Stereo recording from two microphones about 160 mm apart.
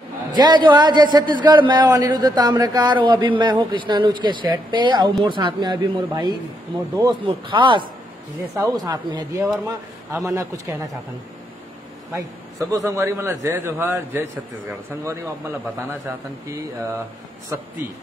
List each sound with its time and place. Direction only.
0.3 s a man's voice: 25° right (ahead or behind)
12.1 s a man's voice: 20° right (ahead or behind)
16.4 s speech: 20° right (ahead or behind)